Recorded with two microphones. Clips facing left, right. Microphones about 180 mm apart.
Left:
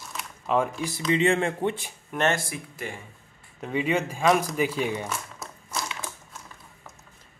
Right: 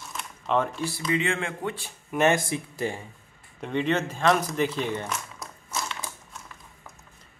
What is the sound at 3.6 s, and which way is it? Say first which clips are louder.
Speech: even; 5° left (ahead or behind).